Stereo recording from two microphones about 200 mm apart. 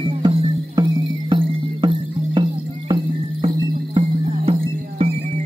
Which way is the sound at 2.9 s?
25° right (ahead or behind).